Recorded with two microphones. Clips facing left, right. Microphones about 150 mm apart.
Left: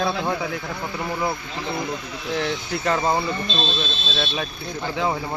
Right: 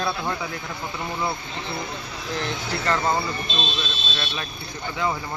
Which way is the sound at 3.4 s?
15° right (ahead or behind).